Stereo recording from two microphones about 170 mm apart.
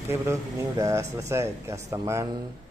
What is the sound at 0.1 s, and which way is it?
Speech, 15° right (ahead or behind).